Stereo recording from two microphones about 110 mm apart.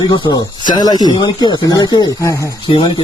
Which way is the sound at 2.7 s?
45° left (ahead or behind).